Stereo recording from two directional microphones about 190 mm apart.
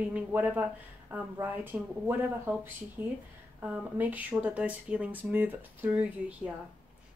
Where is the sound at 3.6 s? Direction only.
10° right (ahead or behind).